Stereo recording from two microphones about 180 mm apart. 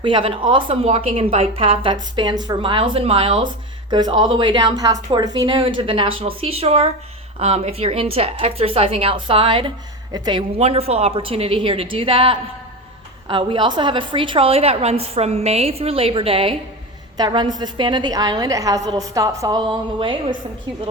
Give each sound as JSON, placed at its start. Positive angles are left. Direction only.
{"t": 0.0, "sound": "a woman's voice", "side_deg": -30}